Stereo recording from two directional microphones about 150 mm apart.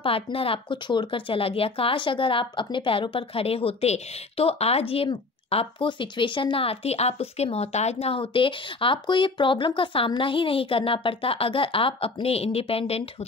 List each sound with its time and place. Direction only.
0.0 s speech: 35° left (ahead or behind)